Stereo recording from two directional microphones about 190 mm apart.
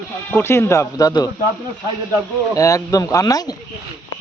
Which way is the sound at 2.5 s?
15° left (ahead or behind).